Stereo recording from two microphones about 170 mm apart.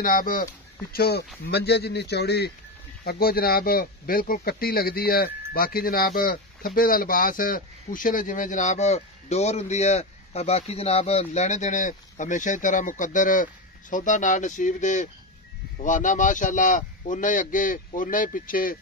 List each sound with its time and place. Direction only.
0.0 s speech: 55° left (ahead or behind)
0.9 s speech: 70° left (ahead or behind)
3.0 s speech: 60° left (ahead or behind)